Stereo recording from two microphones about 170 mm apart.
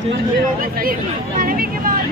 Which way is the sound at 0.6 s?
55° right (ahead or behind).